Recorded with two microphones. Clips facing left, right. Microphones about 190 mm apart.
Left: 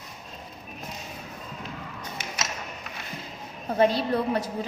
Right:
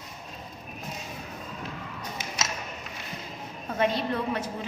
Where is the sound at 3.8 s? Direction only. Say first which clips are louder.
Left 4 dB; 35° left (ahead or behind).